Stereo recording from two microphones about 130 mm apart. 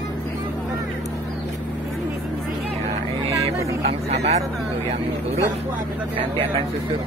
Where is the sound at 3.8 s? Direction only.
55° right (ahead or behind).